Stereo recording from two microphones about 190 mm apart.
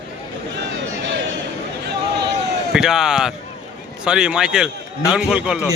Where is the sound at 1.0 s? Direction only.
70° right (ahead or behind).